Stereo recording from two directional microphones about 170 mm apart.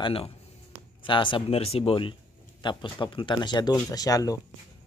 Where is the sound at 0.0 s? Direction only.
35° left (ahead or behind).